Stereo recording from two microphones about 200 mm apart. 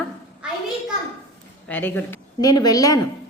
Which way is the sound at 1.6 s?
10° left (ahead or behind).